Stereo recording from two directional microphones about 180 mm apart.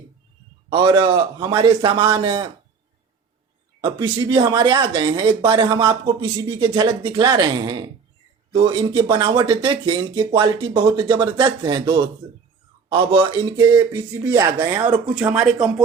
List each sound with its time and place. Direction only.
0.7 s speech: 30° right (ahead or behind)
3.8 s speech: 25° right (ahead or behind)
13.9 s speech: 10° right (ahead or behind)